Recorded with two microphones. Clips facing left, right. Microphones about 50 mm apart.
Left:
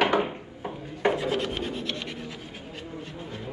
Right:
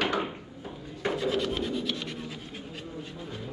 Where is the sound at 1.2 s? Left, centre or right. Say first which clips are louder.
Even; left.